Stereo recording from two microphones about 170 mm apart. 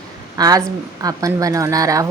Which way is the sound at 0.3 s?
20° right (ahead or behind).